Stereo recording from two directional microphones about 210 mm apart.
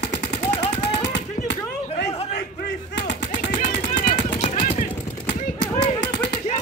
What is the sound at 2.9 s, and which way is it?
Machine gun, 55° left (ahead or behind).